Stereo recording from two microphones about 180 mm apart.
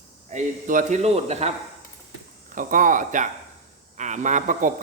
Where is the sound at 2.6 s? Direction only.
45° right (ahead or behind).